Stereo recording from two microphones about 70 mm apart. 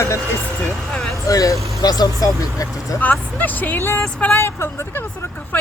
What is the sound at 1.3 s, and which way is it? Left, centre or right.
Speech, left.